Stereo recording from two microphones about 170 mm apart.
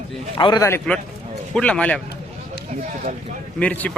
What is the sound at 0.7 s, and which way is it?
Speech, 10° left (ahead or behind).